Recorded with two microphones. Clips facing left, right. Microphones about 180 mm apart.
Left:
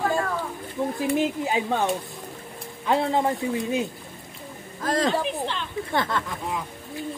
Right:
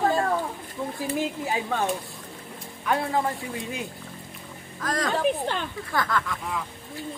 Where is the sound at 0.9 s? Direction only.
20° left (ahead or behind).